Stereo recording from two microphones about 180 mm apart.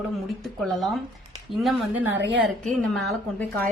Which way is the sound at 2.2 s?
80° right.